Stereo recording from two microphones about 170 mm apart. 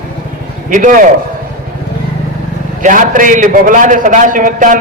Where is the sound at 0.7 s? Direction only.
50° right (ahead or behind).